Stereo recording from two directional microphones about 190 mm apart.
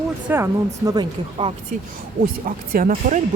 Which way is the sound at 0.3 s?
10° right (ahead or behind).